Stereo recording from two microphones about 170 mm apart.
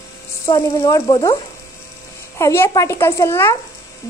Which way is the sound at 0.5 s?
20° left (ahead or behind).